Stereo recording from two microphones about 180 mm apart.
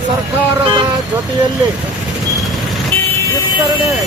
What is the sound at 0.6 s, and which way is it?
Speech, 25° right (ahead or behind).